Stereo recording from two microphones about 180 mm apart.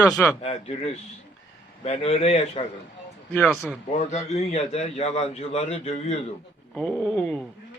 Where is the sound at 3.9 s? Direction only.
40° left (ahead or behind).